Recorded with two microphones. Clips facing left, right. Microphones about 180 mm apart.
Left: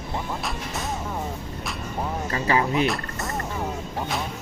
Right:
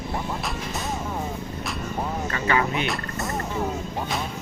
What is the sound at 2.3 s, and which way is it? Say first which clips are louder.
Speech: left 2 dB; 30° left (ahead or behind).